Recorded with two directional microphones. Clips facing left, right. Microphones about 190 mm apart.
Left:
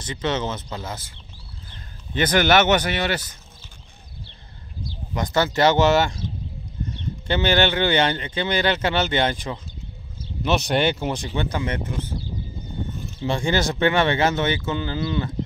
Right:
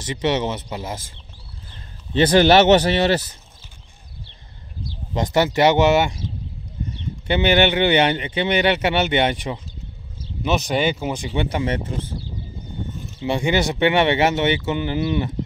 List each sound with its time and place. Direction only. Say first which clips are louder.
0.0 s speech: right 4 dB; 20° right (ahead or behind)
2.1 s speech: right 5 dB; 30° right (ahead or behind)
5.1 s speech: right 3 dB; 20° right (ahead or behind)
7.2 s speech: right 3 dB; 15° right (ahead or behind)
10.4 s speech: even; 5° right (ahead or behind)
11.5 s speech: right 3 dB; 25° right (ahead or behind)
13.2 s speech: right 2 dB; 15° right (ahead or behind)